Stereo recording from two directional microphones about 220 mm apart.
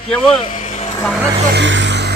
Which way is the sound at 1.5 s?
55° right (ahead or behind).